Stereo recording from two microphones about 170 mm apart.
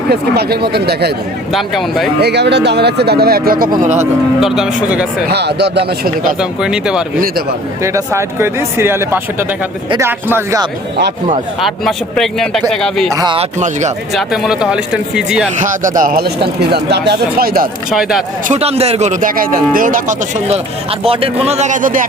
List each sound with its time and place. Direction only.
0.1 s speech: 70° right (ahead or behind)
1.5 s speech: centre (ahead or behind)
2.2 s speech: 85° right; by 3.7 s 60° right (ahead or behind)
4.4 s speech: 5° right (ahead or behind)
5.3 s speech: 80° right
6.4 s speech: 5° right (ahead or behind)
7.8 s speech: 15° right (ahead or behind)
11.6 s speech: centre (ahead or behind)
13.1 s speech: 30° right (ahead or behind)
14.1 s speech: centre (ahead or behind)
15.6 s speech: 50° right (ahead or behind)
18.4 s speech: 40° right (ahead or behind)
21.0 s a man's voice: 35° right (ahead or behind); by 22.0 s 50° right (ahead or behind)